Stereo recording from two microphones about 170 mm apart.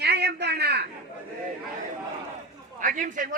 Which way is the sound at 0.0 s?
75° right (ahead or behind).